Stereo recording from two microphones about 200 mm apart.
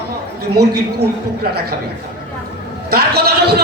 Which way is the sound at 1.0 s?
50° right (ahead or behind).